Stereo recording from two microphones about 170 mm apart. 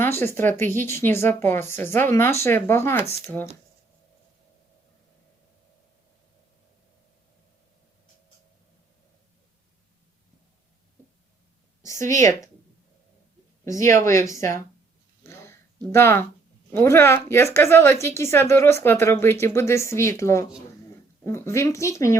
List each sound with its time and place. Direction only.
0.0 s speech: 15° left (ahead or behind)
11.9 s a woman's voice: 50° right (ahead or behind)
14.0 s speech: 20° left (ahead or behind)
15.2 s a sound: 15° left (ahead or behind)
16.7 s speech: 15° left (ahead or behind)